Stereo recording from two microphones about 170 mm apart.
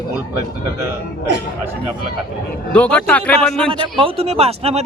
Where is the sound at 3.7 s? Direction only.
30° right (ahead or behind).